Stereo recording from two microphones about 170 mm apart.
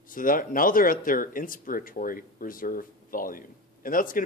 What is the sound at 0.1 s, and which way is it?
Speech, 55° left (ahead or behind).